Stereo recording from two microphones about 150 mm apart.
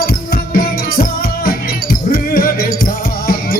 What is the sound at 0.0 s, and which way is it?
Music, 75° left (ahead or behind).